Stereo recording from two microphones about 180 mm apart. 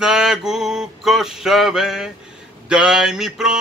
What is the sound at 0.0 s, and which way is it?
Mantra, 5° right (ahead or behind).